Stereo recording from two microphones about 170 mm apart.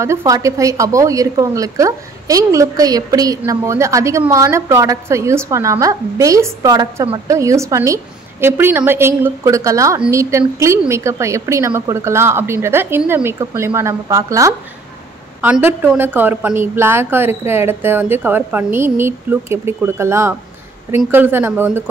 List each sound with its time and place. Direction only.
0.0 s a woman's voice: 15° right (ahead or behind)